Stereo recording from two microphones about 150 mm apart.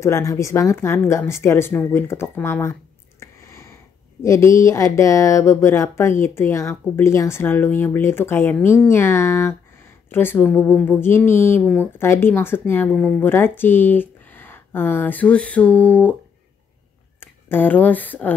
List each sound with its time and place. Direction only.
0.0 s a woman's voice: 20° left (ahead or behind)
17.2 s speech: 15° left (ahead or behind)